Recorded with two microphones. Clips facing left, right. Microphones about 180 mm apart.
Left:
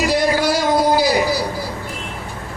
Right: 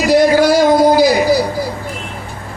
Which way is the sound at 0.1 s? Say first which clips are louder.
Right 12 dB; 45° right (ahead or behind).